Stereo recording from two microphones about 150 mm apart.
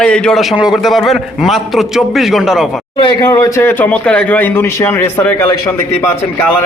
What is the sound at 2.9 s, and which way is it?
Speech, 35° left (ahead or behind).